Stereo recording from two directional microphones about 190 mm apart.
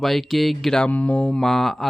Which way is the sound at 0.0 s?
Centre (ahead or behind).